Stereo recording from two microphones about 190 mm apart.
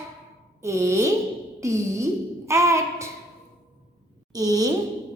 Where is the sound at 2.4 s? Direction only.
15° right (ahead or behind).